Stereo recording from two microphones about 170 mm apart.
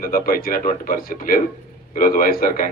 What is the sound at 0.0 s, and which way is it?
A man's voice, 55° left (ahead or behind).